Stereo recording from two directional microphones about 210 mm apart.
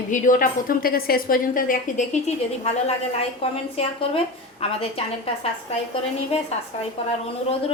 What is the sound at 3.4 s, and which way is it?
A woman's voice, 30° left (ahead or behind).